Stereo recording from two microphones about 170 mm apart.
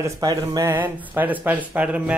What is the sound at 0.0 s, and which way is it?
Speech, 20° right (ahead or behind).